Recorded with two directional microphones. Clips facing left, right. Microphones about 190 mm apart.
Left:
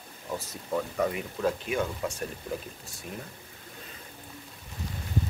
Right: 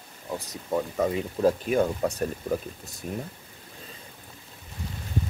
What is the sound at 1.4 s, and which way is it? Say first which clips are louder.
Speech: right 6 dB; 40° right (ahead or behind).